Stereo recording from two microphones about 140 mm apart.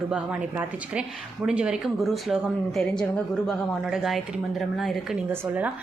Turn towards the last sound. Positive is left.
turn(degrees=-15)  # may be behind; listen again after turning